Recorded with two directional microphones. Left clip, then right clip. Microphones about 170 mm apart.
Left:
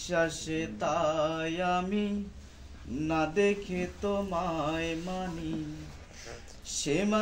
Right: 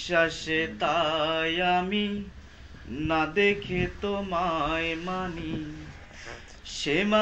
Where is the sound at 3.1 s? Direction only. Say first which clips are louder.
Right 4 dB; 40° left (ahead or behind).